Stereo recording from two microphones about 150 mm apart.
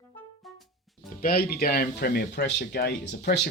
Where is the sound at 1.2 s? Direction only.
85° left.